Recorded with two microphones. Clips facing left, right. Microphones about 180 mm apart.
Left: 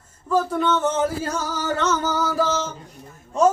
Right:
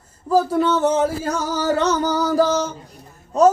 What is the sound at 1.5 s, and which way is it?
Speech, 35° right (ahead or behind).